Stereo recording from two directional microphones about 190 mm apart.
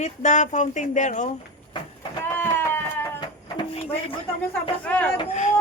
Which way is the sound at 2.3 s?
10° left (ahead or behind).